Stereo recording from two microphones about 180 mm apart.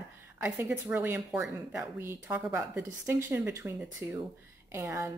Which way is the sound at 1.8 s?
15° right (ahead or behind).